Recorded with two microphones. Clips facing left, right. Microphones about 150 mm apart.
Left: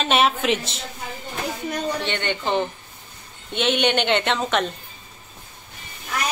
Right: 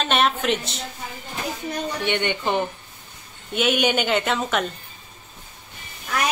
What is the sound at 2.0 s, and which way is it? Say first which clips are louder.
Speech: right 1 dB; 15° right (ahead or behind).